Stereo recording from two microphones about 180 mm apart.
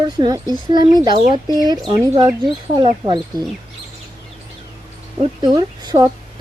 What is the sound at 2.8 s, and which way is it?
Speech, 25° right (ahead or behind).